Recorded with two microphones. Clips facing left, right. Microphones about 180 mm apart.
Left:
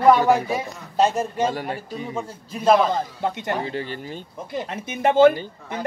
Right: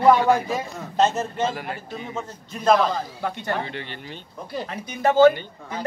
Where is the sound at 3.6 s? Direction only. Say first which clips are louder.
Left 5 dB; 35° left (ahead or behind).